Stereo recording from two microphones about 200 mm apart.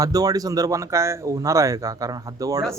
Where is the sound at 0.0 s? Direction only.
20° right (ahead or behind).